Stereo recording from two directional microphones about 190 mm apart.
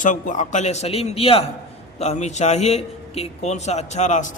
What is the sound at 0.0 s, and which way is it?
A man's voice, 40° left (ahead or behind).